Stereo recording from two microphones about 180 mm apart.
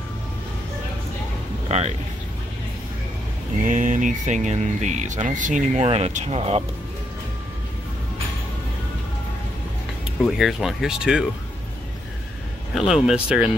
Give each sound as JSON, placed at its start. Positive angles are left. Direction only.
{"t": 1.7, "sound": "speech", "side_deg": -40}
{"t": 3.6, "sound": "speech", "side_deg": -45}
{"t": 10.2, "sound": "speech", "side_deg": 0}
{"t": 12.7, "sound": "speech", "side_deg": 0}